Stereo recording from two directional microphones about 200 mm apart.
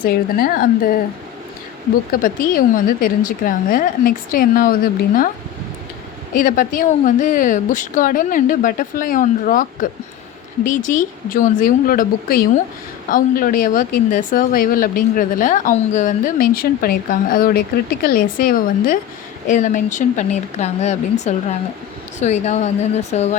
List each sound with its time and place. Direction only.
0.0 s speech: 45° left (ahead or behind)
2.1 s speech: 45° left (ahead or behind)
6.3 s a woman's voice: 45° left (ahead or behind)